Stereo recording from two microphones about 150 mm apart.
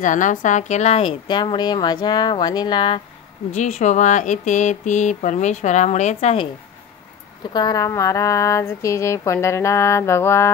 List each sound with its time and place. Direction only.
0.0 s speech: 60° left (ahead or behind); by 3.0 s 30° left (ahead or behind)
3.5 s speech: 50° left (ahead or behind)
7.5 s a sound: 25° left (ahead or behind)